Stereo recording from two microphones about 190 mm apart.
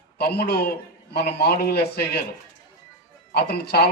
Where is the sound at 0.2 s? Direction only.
55° left (ahead or behind).